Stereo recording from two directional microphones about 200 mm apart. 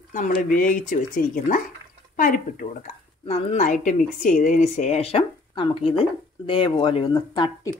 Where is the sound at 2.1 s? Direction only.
40° left (ahead or behind); by 7.7 s 20° left (ahead or behind).